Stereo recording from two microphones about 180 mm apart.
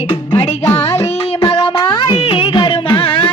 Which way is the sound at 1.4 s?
30° left (ahead or behind).